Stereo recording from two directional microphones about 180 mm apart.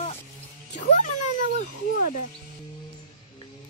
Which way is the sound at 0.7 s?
45° left (ahead or behind).